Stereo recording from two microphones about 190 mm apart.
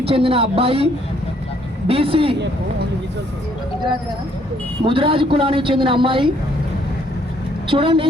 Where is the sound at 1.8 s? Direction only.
30° right (ahead or behind).